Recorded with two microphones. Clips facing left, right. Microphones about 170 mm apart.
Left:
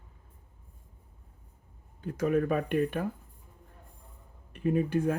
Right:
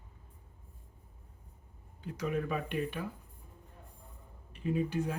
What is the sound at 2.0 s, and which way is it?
Speech, 50° left (ahead or behind).